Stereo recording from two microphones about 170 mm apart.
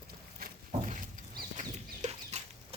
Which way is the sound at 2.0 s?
45° right (ahead or behind).